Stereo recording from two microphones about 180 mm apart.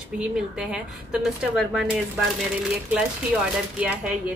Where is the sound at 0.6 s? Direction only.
5° right (ahead or behind).